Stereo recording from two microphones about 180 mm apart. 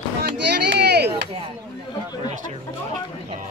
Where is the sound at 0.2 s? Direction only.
70° right (ahead or behind).